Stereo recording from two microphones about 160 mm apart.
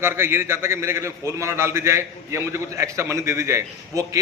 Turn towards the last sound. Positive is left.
turn(degrees=-20)  # may be behind; listen again after turning